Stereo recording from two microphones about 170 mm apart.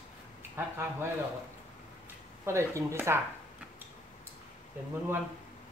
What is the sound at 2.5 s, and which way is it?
Speech, 15° right (ahead or behind).